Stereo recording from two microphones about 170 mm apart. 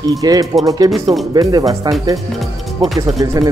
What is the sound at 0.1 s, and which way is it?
Speech, 20° right (ahead or behind).